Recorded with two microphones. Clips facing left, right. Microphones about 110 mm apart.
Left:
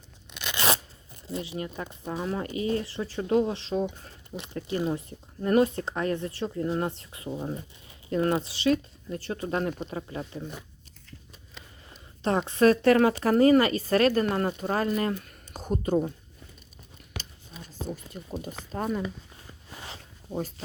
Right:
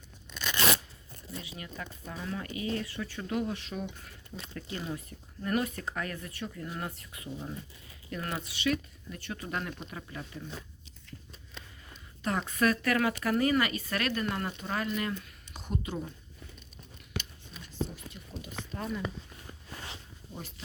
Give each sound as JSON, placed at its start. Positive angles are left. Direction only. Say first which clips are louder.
{"t": 0.3, "sound": "crunch", "louder": "even", "side_deg": 15}
{"t": 1.3, "sound": "speech", "louder": "left 10 dB", "side_deg": 30}
{"t": 12.2, "sound": "speech", "louder": "left 7 dB", "side_deg": 30}
{"t": 17.2, "sound": "a sound", "louder": "right 1 dB", "side_deg": 40}
{"t": 18.7, "sound": "speech", "louder": "left 7 dB", "side_deg": 45}
{"t": 19.9, "sound": "zipper", "louder": "left 9 dB", "side_deg": 40}